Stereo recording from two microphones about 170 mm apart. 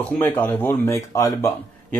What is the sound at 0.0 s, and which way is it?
Speech, 10° left (ahead or behind).